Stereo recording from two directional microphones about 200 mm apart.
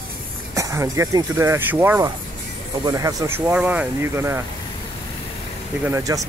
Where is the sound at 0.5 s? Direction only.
15° right (ahead or behind).